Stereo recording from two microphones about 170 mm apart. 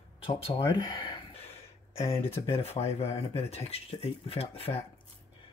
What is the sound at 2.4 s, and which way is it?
Speech, 35° left (ahead or behind).